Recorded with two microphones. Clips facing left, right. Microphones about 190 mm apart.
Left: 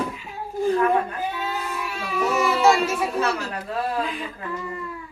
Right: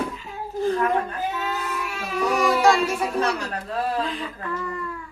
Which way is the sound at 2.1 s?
5° left (ahead or behind).